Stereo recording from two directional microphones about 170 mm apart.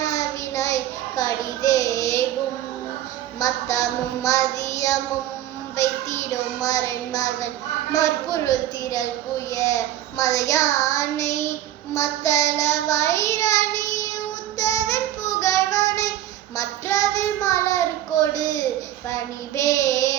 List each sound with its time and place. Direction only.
0.0 s child singing: 20° left (ahead or behind)
3.4 s child singing: 20° left (ahead or behind)
18.1 s a sound: 50° left (ahead or behind)
19.6 s child singing: 20° left (ahead or behind)